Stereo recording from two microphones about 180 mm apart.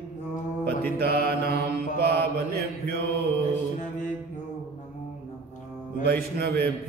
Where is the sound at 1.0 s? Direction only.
60° right (ahead or behind).